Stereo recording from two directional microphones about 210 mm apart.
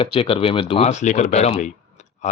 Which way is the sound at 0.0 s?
25° left (ahead or behind).